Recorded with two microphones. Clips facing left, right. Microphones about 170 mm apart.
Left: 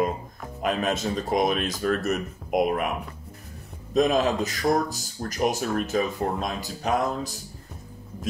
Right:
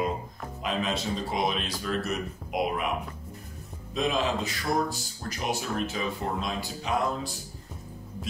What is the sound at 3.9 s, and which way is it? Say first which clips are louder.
Speech: left 6 dB; 45° left (ahead or behind).